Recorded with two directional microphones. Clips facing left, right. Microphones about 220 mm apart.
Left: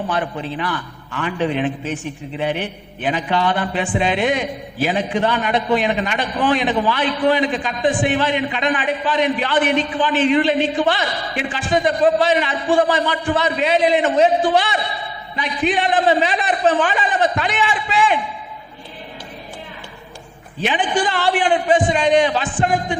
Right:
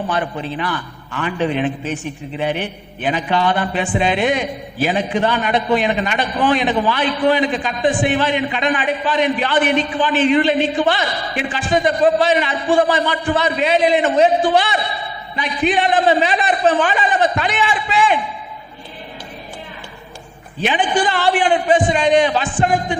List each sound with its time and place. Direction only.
0.1 s a man's voice: 20° right (ahead or behind)
20.7 s a man's voice: 15° right (ahead or behind)